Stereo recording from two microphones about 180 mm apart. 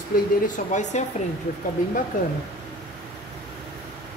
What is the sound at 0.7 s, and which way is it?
Speech, 40° left (ahead or behind).